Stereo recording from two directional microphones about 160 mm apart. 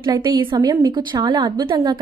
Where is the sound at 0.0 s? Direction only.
30° right (ahead or behind).